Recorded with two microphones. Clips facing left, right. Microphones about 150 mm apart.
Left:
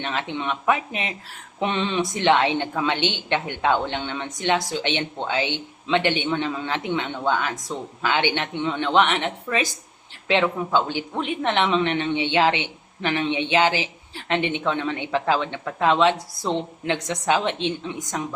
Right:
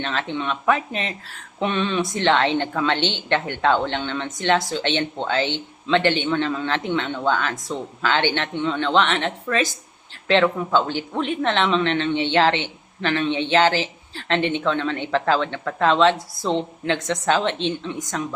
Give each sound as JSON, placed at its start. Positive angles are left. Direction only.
{"t": 0.0, "sound": "speech", "side_deg": 15}